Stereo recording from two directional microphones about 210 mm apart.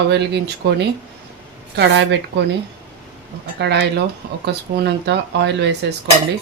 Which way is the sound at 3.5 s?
55° right (ahead or behind).